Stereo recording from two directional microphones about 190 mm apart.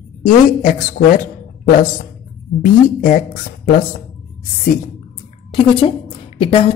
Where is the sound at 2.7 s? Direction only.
45° left (ahead or behind).